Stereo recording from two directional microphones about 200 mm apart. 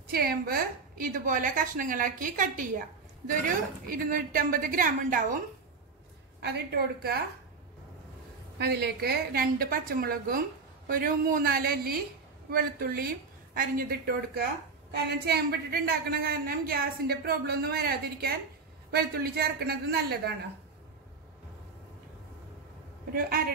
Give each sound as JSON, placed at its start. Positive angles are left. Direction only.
{"t": 0.1, "sound": "a woman's voice", "side_deg": -50}
{"t": 6.4, "sound": "a woman's voice", "side_deg": -55}
{"t": 8.5, "sound": "a woman's voice", "side_deg": -55}